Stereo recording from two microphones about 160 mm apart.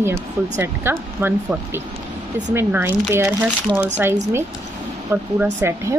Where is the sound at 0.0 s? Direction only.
15° right (ahead or behind).